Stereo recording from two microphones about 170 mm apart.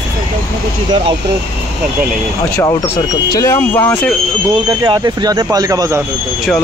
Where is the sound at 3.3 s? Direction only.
20° left (ahead or behind).